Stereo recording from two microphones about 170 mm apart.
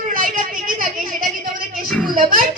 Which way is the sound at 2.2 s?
50° right (ahead or behind).